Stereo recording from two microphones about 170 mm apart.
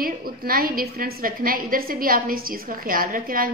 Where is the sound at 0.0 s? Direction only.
60° right (ahead or behind).